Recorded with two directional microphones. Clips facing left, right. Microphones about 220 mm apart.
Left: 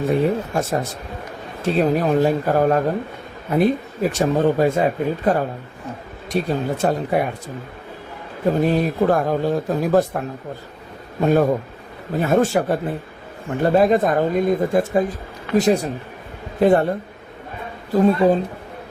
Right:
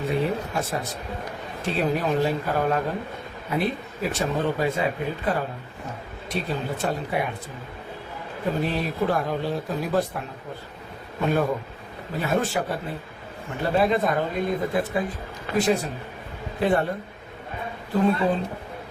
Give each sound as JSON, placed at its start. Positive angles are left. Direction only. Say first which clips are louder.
{"t": 0.1, "sound": "speech", "louder": "left 6 dB", "side_deg": 45}
{"t": 8.6, "sound": "speech", "louder": "left 8 dB", "side_deg": 45}
{"t": 17.9, "sound": "speech", "louder": "left 6 dB", "side_deg": 40}